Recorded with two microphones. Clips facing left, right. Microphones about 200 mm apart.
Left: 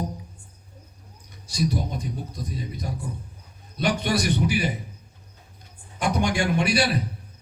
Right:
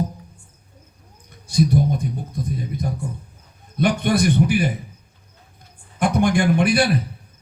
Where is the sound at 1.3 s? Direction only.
55° right (ahead or behind).